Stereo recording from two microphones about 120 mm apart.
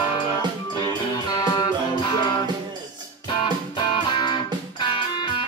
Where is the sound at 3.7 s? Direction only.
40° left (ahead or behind).